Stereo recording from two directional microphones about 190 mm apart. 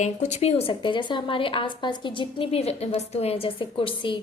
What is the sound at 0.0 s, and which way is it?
A woman's voice, 35° left (ahead or behind).